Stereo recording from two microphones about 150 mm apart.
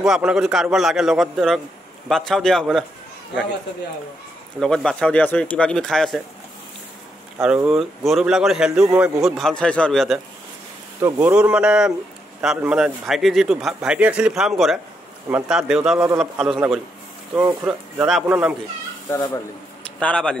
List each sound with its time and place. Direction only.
0.0 s a man's voice: 5° right (ahead or behind)
4.6 s a man's voice: 5° left (ahead or behind)
7.4 s a man's voice: 5° right (ahead or behind)
11.0 s a man's voice: 15° right (ahead or behind)
17.4 s a man's voice: 10° right (ahead or behind)
19.0 s speech: 20° left (ahead or behind)
19.8 s a man's voice: 5° left (ahead or behind)